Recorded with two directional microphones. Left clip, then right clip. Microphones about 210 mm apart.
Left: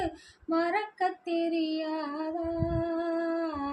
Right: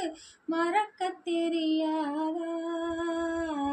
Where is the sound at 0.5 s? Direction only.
15° left (ahead or behind).